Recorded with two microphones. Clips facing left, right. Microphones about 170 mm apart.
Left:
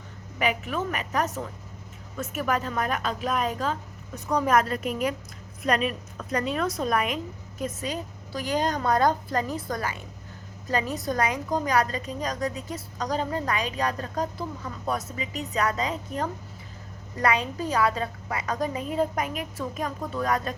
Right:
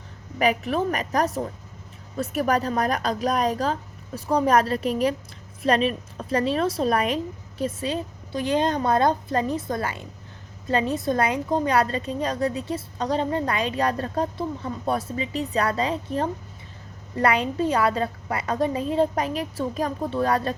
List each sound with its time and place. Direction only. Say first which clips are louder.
0.3 s a woman's voice: right 5 dB; 35° right (ahead or behind)